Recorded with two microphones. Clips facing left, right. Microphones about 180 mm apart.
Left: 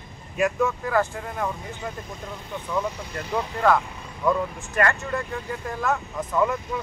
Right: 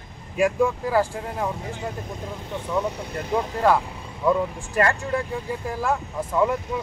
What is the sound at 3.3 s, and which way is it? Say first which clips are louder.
Speech: right 1 dB; 15° right (ahead or behind).